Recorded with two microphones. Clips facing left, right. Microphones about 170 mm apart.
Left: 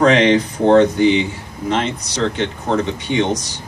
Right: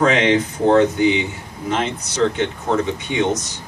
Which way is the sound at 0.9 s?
5° right (ahead or behind).